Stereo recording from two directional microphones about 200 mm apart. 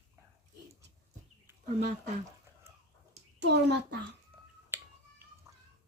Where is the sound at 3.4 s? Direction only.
55° right (ahead or behind).